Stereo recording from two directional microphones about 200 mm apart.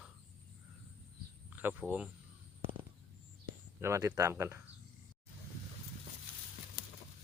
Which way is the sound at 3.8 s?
15° right (ahead or behind).